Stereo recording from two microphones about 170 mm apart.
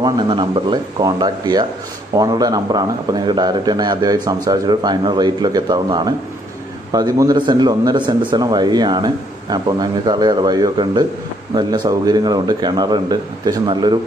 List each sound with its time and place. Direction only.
0.0 s a man's voice: 25° right (ahead or behind)